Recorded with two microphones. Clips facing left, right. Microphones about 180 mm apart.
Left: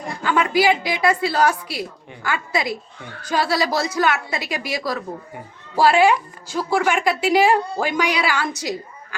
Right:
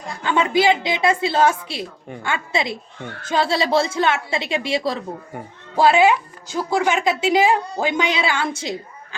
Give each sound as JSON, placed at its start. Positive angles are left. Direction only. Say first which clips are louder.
{"t": 0.2, "sound": "a woman's voice", "louder": "even", "side_deg": -25}